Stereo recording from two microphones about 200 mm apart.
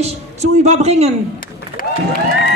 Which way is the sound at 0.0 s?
35° right (ahead or behind).